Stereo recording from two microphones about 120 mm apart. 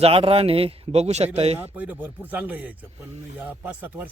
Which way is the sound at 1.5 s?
15° right (ahead or behind).